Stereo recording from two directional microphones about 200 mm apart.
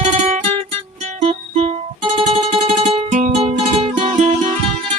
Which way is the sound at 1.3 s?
30° right (ahead or behind).